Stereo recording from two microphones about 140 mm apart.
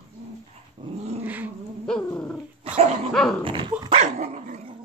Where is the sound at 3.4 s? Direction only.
35° right (ahead or behind).